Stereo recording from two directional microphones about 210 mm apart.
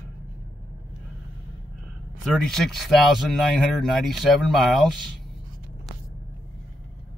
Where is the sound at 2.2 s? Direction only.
Centre (ahead or behind).